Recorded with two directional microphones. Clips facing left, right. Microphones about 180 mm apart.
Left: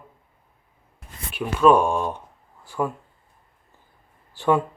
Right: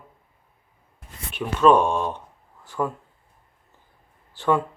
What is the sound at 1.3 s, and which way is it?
Speech, 5° left (ahead or behind).